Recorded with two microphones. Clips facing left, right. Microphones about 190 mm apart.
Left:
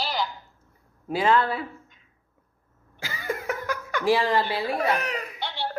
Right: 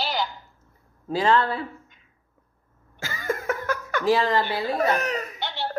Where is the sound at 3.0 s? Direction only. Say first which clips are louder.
Right 3 dB; 15° left (ahead or behind).